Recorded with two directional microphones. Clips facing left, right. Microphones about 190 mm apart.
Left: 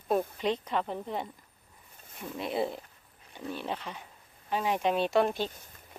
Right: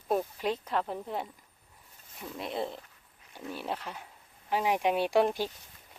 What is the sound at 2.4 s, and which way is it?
Speech, 5° left (ahead or behind).